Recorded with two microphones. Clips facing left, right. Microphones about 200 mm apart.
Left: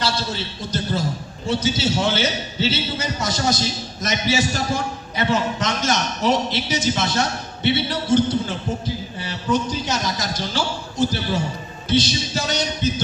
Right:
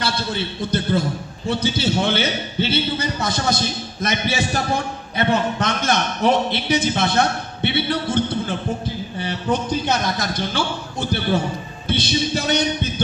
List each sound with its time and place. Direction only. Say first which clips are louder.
0.0 s a man's voice: right 1 dB; 55° right (ahead or behind)